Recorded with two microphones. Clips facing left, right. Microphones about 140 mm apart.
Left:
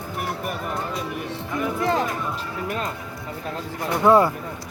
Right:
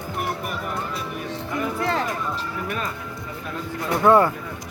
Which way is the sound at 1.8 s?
15° left (ahead or behind).